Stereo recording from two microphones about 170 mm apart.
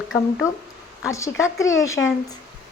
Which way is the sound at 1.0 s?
15° left (ahead or behind).